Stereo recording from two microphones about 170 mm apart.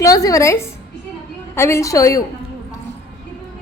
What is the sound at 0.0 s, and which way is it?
A woman's voice, 20° left (ahead or behind).